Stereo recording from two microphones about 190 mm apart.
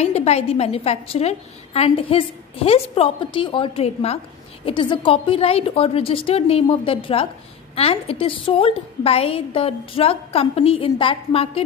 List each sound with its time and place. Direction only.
0.0 s a woman's voice: 35° left (ahead or behind)